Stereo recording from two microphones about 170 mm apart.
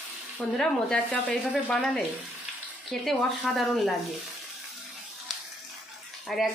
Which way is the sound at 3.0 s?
Centre (ahead or behind).